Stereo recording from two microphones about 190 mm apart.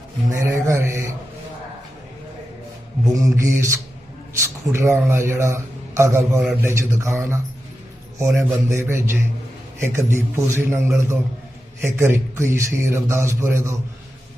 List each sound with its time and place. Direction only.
0.3 s a man's voice: 15° right (ahead or behind)
3.0 s a man's voice: 15° right (ahead or behind)
8.4 s a man's voice: 15° right (ahead or behind)